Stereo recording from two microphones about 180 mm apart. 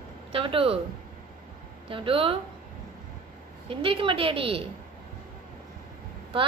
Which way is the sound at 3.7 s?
30° right (ahead or behind).